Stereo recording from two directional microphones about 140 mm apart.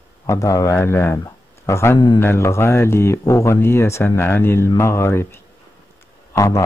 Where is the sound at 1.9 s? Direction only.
35° left (ahead or behind).